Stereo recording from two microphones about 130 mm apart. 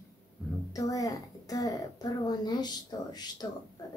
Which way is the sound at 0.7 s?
25° left (ahead or behind).